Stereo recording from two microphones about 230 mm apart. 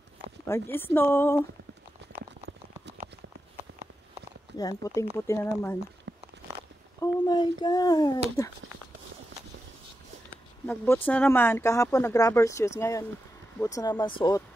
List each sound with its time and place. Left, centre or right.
0.5 s speech: centre
4.6 s speech: centre
6.1 s a sound: right
7.0 s speech: centre
11.1 s speech: centre